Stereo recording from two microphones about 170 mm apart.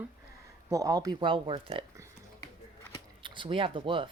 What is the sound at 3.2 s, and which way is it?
Speech, 30° right (ahead or behind).